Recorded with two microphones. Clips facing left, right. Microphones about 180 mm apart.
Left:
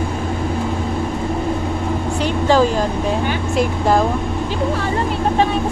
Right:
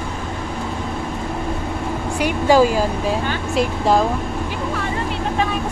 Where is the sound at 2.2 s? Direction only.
10° right (ahead or behind).